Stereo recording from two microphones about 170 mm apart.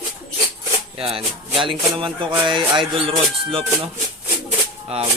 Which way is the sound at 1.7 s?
30° right (ahead or behind).